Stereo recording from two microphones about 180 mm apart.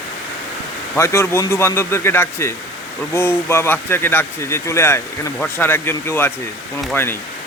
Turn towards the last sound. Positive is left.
turn(degrees=10)  # may be behind; listen again after turning